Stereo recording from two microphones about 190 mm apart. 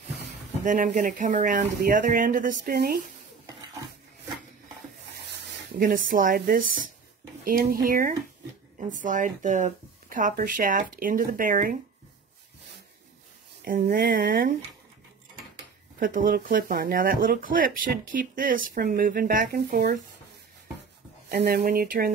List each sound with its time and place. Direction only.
0.7 s speech: 45° right (ahead or behind)
5.8 s speech: 45° right (ahead or behind)
13.7 s speech: 45° right (ahead or behind)
16.0 s speech: 45° right (ahead or behind)
21.3 s speech: 55° right (ahead or behind)